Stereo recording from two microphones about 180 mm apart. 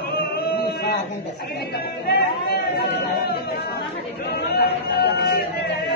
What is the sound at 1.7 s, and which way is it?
Speech, 60° left (ahead or behind).